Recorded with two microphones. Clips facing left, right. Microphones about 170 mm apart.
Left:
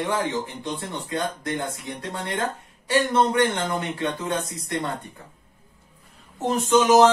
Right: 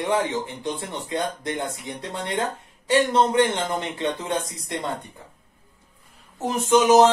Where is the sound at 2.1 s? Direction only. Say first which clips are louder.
Right 1 dB; 20° right (ahead or behind).